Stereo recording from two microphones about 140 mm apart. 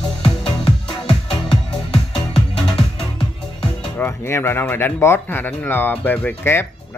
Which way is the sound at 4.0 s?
15° left (ahead or behind).